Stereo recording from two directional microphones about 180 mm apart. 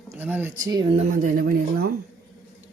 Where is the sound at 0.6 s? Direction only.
20° right (ahead or behind).